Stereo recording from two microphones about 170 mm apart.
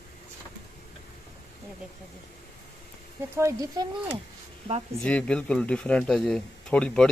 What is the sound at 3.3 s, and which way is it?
Speech, 20° right (ahead or behind).